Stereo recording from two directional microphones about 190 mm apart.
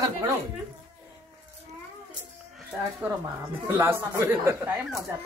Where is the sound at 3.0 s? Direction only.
10° right (ahead or behind).